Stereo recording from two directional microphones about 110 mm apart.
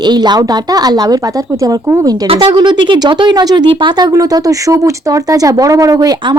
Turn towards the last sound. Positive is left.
turn(degrees=-35)  # may be behind; listen again after turning